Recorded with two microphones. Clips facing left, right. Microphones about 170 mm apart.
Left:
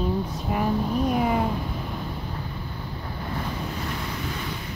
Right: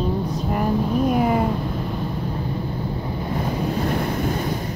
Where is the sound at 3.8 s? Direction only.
50° right (ahead or behind).